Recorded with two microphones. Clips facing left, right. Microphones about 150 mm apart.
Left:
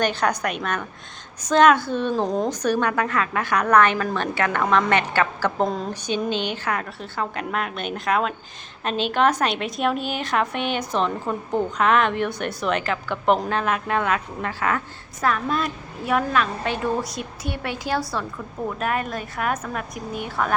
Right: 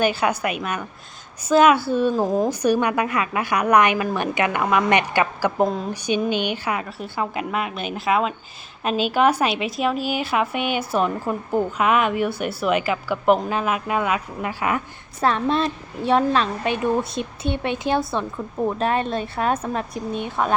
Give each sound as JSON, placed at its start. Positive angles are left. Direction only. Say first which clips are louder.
{"t": 0.0, "sound": "a woman's voice", "louder": "right 2 dB", "side_deg": -5}
{"t": 5.6, "sound": "a woman's voice", "louder": "right 2 dB", "side_deg": 0}
{"t": 15.2, "sound": "a woman's voice", "louder": "right 3 dB", "side_deg": -30}
{"t": 16.6, "sound": "a woman's voice", "louder": "right 3 dB", "side_deg": -20}